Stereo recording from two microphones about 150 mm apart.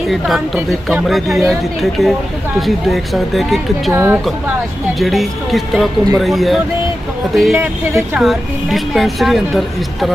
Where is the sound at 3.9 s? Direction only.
15° right (ahead or behind).